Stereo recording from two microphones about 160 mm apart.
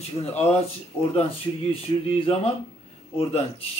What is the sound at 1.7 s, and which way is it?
Speech, 35° left (ahead or behind).